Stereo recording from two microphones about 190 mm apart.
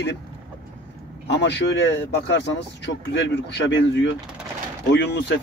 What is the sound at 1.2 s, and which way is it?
Speech, 65° left (ahead or behind).